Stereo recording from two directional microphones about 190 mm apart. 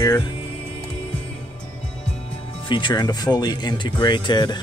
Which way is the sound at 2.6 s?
25° left (ahead or behind).